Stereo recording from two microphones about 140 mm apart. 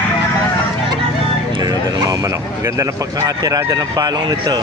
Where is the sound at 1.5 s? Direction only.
30° right (ahead or behind).